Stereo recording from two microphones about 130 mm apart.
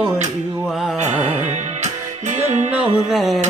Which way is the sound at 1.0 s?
55° right (ahead or behind).